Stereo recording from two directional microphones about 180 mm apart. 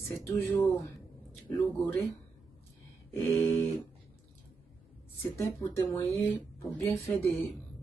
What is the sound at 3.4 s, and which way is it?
Speech, 15° left (ahead or behind).